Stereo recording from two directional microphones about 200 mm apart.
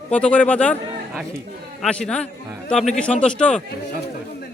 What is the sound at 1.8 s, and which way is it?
A man's voice, 5° left (ahead or behind).